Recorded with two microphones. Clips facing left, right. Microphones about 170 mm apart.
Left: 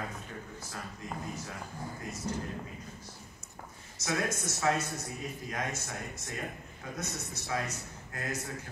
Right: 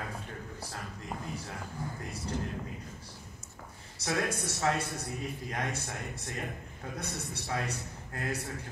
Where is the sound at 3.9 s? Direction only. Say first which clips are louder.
Right 1 dB; 30° right (ahead or behind).